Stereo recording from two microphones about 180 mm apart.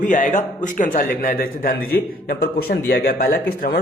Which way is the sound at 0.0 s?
45° left (ahead or behind).